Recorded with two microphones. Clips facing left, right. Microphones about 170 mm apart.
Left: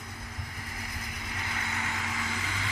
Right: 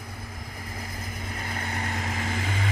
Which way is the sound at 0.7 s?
45° right (ahead or behind).